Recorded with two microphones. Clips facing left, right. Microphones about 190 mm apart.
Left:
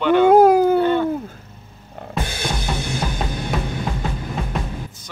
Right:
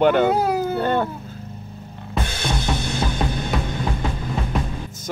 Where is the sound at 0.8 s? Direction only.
50° right (ahead or behind).